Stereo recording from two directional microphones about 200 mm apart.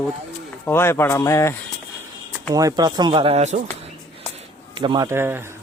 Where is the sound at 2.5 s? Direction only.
20° right (ahead or behind).